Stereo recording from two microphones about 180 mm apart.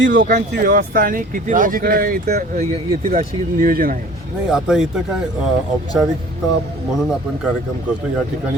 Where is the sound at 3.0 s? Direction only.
45° right (ahead or behind).